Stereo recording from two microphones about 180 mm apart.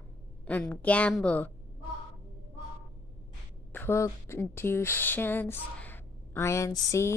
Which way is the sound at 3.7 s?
15° left (ahead or behind).